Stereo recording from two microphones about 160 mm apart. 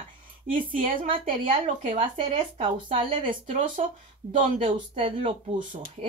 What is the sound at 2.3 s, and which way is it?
Speech, 35° right (ahead or behind).